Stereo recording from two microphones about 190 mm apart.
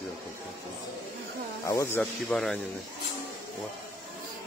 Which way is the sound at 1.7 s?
15° left (ahead or behind).